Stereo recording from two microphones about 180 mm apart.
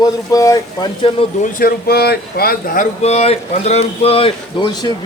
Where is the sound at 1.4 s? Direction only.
55° left (ahead or behind).